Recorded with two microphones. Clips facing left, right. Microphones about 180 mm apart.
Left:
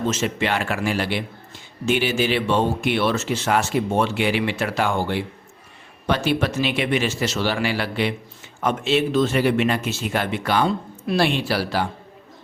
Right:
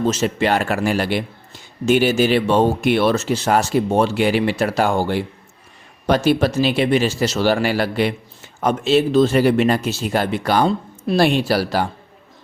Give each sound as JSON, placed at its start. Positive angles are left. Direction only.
{"t": 0.0, "sound": "speech", "side_deg": -35}